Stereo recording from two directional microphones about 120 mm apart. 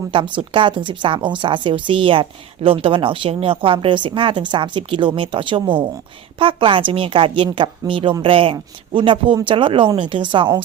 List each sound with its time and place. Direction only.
0.1 s speech: 45° right (ahead or behind)